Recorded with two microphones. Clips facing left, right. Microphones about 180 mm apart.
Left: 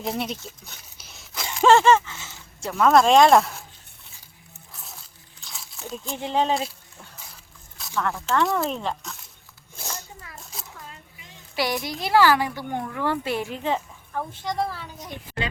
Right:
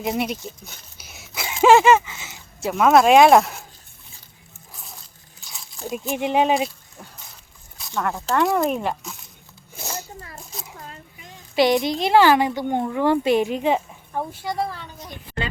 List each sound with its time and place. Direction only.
0.0 s a sound: 5° right (ahead or behind)
1.6 s speech: 10° right (ahead or behind)
4.7 s a sound: centre (ahead or behind)
5.4 s biting: centre (ahead or behind)
5.9 s speech: 15° right (ahead or behind)
7.9 s speech: 20° right (ahead or behind)
9.8 s a sound: 5° right (ahead or behind)
11.5 s a woman's voice: 20° right (ahead or behind)
14.4 s speech: 5° right (ahead or behind)